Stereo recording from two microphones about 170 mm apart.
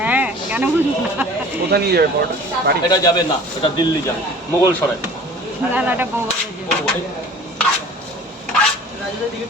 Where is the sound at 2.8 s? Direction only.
25° left (ahead or behind).